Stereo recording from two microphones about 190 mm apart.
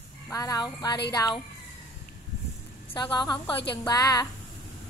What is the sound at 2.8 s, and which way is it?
A woman's voice, 25° left (ahead or behind).